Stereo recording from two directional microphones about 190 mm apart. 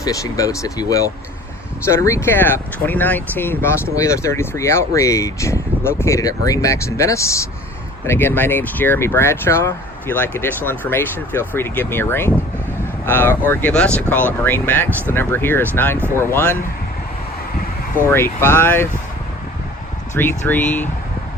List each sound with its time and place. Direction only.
0.0 s speech: 20° left (ahead or behind)
18.1 s speech: 15° left (ahead or behind)
20.1 s speech: 10° left (ahead or behind)